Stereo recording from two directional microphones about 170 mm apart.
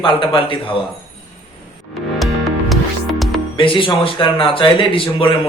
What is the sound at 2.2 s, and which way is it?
Music, centre (ahead or behind).